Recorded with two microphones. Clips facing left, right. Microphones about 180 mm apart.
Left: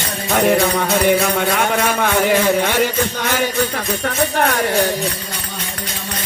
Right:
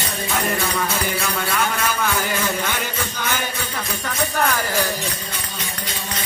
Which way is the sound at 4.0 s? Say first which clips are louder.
Left 4 dB; 60° left (ahead or behind).